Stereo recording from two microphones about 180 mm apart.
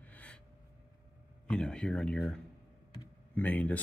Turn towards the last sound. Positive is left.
turn(degrees=10)  # may be behind; listen again after turning